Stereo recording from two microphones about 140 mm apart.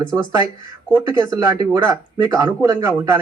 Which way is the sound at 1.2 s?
25° right (ahead or behind).